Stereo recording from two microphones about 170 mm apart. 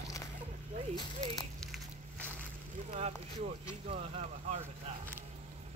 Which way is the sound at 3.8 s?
40° right (ahead or behind).